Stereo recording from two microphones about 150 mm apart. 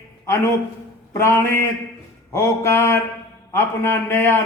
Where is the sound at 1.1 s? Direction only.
20° left (ahead or behind).